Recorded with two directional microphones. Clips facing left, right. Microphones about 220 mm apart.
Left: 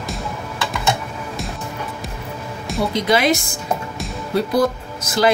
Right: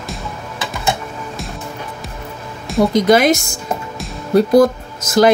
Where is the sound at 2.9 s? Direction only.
45° right (ahead or behind).